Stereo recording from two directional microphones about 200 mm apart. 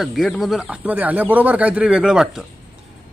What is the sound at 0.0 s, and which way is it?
Speech, centre (ahead or behind).